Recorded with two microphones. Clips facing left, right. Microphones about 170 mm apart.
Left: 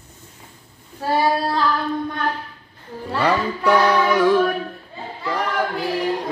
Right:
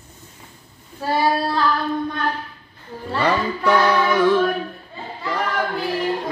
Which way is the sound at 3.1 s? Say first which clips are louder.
Even; 10° left (ahead or behind).